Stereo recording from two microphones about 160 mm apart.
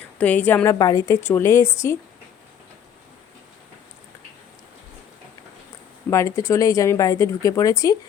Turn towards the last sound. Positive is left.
turn(degrees=20)  # may be behind; listen again after turning